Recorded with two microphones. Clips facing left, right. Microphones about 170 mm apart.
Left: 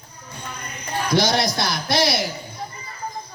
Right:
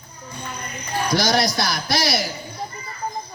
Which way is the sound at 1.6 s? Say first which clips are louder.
Left 2 dB; 25° left (ahead or behind).